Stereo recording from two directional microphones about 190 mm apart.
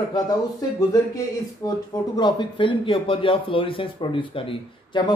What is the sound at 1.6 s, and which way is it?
Speech, 15° left (ahead or behind).